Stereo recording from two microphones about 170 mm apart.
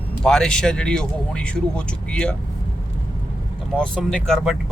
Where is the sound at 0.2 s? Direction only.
5° left (ahead or behind).